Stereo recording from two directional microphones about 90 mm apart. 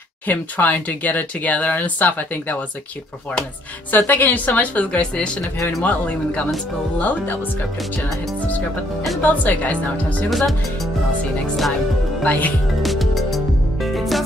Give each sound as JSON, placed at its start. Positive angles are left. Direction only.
{"t": 0.3, "sound": "speech", "side_deg": 20}
{"t": 3.9, "sound": "a woman's voice", "side_deg": 20}
{"t": 9.2, "sound": "a woman's voice", "side_deg": 20}
{"t": 12.2, "sound": "a woman's voice", "side_deg": 15}
{"t": 12.8, "sound": "music", "side_deg": 0}